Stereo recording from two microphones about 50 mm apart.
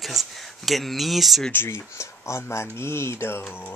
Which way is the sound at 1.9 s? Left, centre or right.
Left.